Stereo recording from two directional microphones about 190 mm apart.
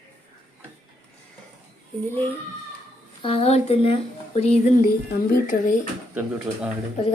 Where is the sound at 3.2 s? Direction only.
30° left (ahead or behind).